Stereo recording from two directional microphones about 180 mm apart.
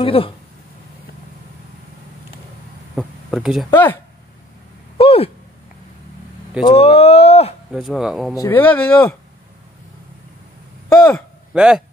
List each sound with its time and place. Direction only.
0.0 s speech: 30° left (ahead or behind)
3.0 s speech: 5° right (ahead or behind)
3.7 s speech: 10° left (ahead or behind)
4.9 s a sound: 30° left (ahead or behind)
6.6 s speech: 35° left (ahead or behind)
7.7 s speech: centre (ahead or behind)
8.4 s speech: 10° left (ahead or behind)
11.1 s a sound: 5° right (ahead or behind)